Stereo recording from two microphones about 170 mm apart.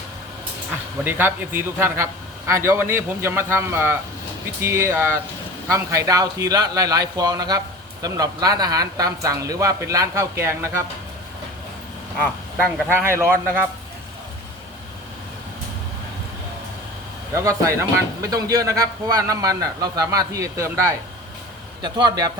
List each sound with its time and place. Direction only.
1.0 s a man's voice: 10° right (ahead or behind)
12.2 s speech: 10° left (ahead or behind)
12.9 s a man's voice: 15° right (ahead or behind)
17.3 s speech: 20° right (ahead or behind)